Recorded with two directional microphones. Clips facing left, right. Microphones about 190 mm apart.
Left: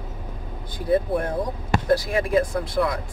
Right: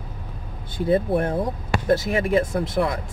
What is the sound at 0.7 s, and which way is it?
Speech, 25° right (ahead or behind).